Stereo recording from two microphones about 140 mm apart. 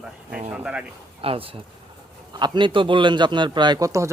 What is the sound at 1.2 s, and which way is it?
A man's voice, 40° right (ahead or behind).